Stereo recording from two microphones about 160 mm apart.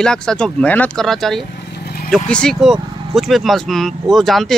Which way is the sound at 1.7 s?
80° left.